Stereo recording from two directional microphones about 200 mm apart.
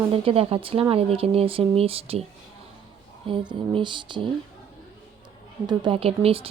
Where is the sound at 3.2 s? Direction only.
25° right (ahead or behind).